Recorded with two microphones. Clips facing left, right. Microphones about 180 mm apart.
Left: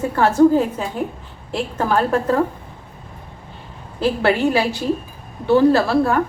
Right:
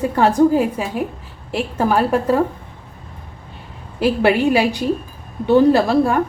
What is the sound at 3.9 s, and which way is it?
A woman's voice, 15° right (ahead or behind).